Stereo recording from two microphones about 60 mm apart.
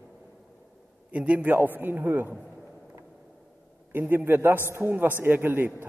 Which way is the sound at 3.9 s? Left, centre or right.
Right.